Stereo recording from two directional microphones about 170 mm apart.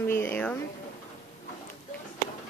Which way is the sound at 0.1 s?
10° left (ahead or behind).